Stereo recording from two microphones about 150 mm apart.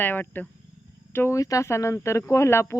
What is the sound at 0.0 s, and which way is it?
Speech, 15° left (ahead or behind).